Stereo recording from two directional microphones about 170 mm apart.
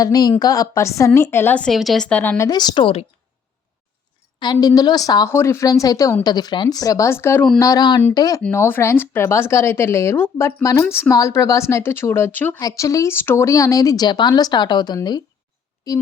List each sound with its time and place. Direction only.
0.0 s a woman's voice: 20° left (ahead or behind)
2.5 s a woman's voice: 25° left (ahead or behind)
4.5 s a woman's voice: 20° left (ahead or behind)
8.4 s a woman's voice: 10° left (ahead or behind)